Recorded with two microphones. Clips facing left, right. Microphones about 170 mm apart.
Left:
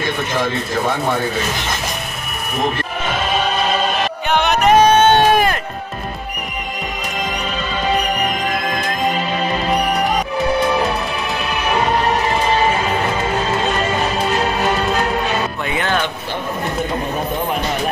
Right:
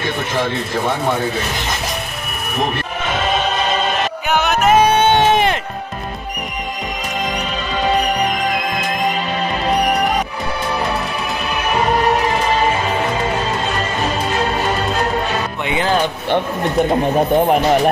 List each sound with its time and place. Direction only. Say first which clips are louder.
4.3 s music: left 1 dB; 5° right (ahead or behind); by 5.6 s 20° right (ahead or behind)
15.7 s music: right 4 dB; 30° right (ahead or behind)